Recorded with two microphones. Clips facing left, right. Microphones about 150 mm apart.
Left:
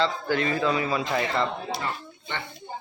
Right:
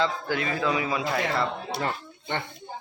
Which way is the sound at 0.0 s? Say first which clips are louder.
Left 2 dB; 10° right (ahead or behind).